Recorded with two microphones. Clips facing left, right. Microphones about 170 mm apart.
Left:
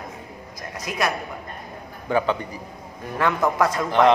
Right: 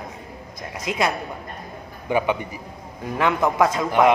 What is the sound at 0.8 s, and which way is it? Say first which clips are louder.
A woman's voice: right 2 dB; 20° right (ahead or behind).